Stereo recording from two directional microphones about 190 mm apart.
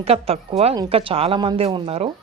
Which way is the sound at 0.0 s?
30° right (ahead or behind).